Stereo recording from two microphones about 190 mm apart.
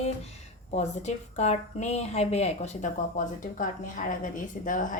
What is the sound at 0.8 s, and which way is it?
A woman's voice, 35° left (ahead or behind).